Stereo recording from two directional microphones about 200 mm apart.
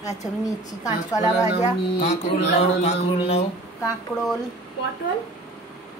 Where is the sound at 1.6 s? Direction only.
35° left (ahead or behind).